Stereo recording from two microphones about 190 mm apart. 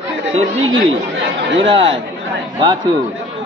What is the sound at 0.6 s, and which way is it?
Speech, 90° right.